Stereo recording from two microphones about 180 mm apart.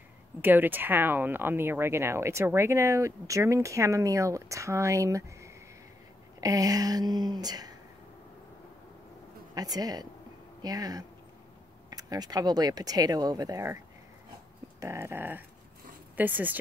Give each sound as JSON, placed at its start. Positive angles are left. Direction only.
{"t": 0.4, "sound": "speech", "side_deg": -10}
{"t": 9.6, "sound": "speech", "side_deg": -20}
{"t": 14.8, "sound": "speech", "side_deg": -15}